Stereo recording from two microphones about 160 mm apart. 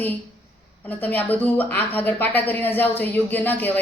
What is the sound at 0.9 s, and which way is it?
Speech, 10° left (ahead or behind).